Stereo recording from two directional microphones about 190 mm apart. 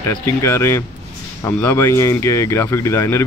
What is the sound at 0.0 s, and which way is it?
Speech, 15° left (ahead or behind).